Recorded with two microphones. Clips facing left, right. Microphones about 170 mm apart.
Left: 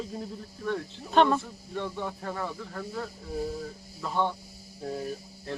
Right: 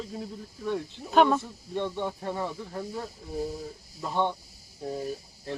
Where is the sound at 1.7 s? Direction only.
25° right (ahead or behind).